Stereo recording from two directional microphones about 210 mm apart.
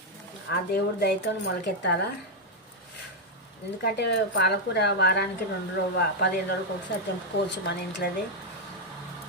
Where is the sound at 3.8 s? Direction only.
50° left (ahead or behind).